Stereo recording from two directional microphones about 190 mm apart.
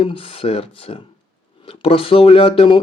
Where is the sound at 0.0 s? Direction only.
30° left (ahead or behind).